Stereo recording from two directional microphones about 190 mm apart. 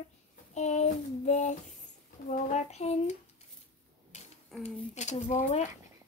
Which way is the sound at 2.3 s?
35° left (ahead or behind).